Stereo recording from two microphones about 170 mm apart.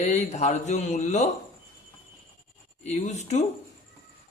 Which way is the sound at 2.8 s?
45° left (ahead or behind).